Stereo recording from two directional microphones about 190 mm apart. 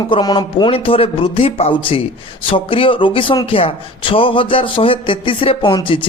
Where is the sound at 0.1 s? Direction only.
25° left (ahead or behind).